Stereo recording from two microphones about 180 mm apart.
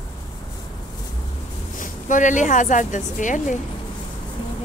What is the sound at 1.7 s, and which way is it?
Speech, 45° left (ahead or behind).